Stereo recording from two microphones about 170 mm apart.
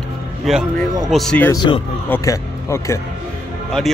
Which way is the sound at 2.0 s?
15° left (ahead or behind).